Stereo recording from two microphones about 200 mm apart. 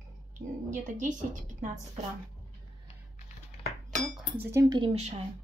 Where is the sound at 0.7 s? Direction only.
40° right (ahead or behind).